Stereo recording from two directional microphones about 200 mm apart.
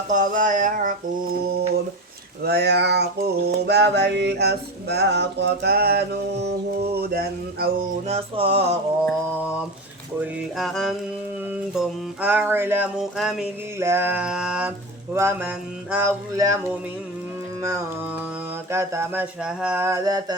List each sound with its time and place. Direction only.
0.1 s a sound: 40° right (ahead or behind)
2.4 s a sound: 55° right (ahead or behind)
8.0 s music: 30° right (ahead or behind)
9.0 s mantra: 10° left (ahead or behind)
10.2 s music: centre (ahead or behind)
12.2 s mantra: 10° right (ahead or behind)
13.7 s mantra: 10° right (ahead or behind)